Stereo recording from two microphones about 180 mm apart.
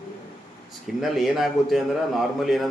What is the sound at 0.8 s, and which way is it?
A man's voice, centre (ahead or behind).